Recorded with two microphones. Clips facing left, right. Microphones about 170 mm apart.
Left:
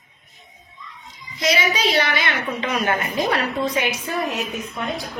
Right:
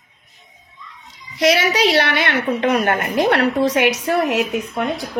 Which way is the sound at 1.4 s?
75° right (ahead or behind).